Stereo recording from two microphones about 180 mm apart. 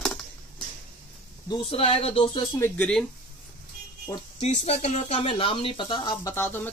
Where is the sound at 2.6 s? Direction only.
5° left (ahead or behind).